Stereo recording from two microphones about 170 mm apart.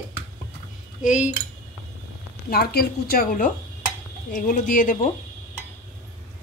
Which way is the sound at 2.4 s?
65° left (ahead or behind).